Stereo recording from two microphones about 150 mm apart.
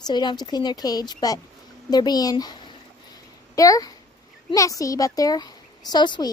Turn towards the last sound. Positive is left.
turn(degrees=30)  # may be behind; listen again after turning